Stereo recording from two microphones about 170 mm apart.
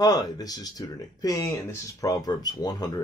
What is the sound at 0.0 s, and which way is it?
Speech, 25° left (ahead or behind).